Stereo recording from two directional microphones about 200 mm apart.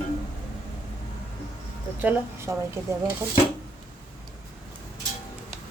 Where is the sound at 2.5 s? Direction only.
15° right (ahead or behind).